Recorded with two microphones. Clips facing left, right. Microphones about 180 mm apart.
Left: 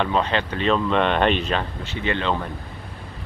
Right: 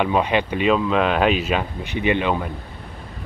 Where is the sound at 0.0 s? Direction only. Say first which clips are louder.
Right 3 dB; 15° right (ahead or behind).